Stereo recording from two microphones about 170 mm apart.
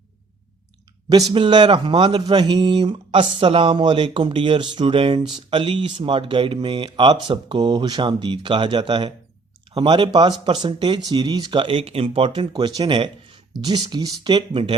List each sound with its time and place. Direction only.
1.1 s speech: 25° right (ahead or behind)